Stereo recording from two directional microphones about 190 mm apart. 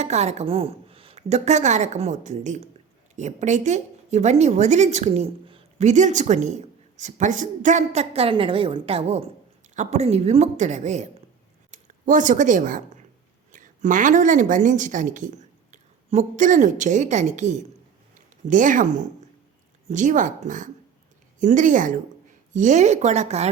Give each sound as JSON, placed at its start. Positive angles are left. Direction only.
{"t": 0.0, "sound": "a woman's voice", "side_deg": -35}